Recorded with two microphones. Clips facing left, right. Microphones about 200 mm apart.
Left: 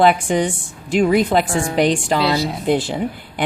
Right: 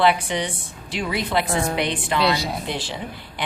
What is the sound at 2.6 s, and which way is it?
Speech, 50° left (ahead or behind).